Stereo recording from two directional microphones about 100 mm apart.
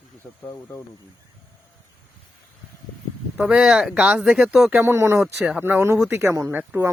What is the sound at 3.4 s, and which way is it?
Speech, 10° right (ahead or behind).